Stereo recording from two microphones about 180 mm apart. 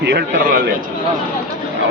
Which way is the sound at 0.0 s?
70° right (ahead or behind).